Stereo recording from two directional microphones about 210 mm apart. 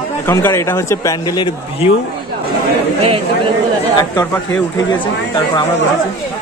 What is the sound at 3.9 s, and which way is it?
Speech, 15° left (ahead or behind).